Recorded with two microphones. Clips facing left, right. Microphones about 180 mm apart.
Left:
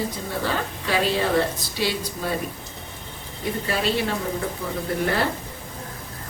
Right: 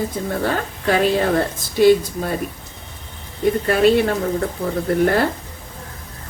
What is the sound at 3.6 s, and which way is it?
A woman's voice, 55° right (ahead or behind).